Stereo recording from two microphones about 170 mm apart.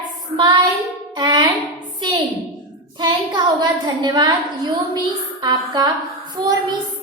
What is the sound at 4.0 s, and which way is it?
Speech, 25° right (ahead or behind).